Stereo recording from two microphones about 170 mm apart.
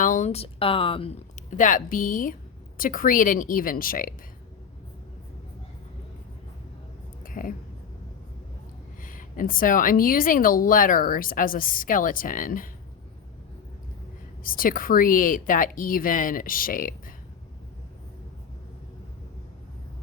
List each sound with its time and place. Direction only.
0.0 s speech: 45° left (ahead or behind); by 1.1 s 30° left (ahead or behind)
1.5 s a woman's voice: 50° left (ahead or behind)
7.3 s a sound: 55° left (ahead or behind)
9.0 s a woman's voice: 55° left (ahead or behind)
14.4 s a woman's voice: 55° left (ahead or behind)